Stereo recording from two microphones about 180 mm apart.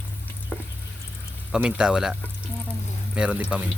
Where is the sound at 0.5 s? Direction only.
5° left (ahead or behind).